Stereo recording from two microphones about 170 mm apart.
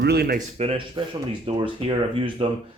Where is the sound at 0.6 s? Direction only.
40° right (ahead or behind).